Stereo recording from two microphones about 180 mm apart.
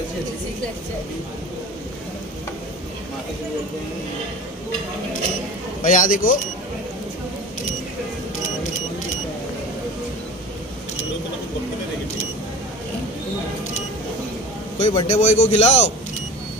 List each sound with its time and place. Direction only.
5.9 s speech: 45° left (ahead or behind)
14.8 s a man's voice: 25° left (ahead or behind)
15.0 s a man's voice: 40° left (ahead or behind)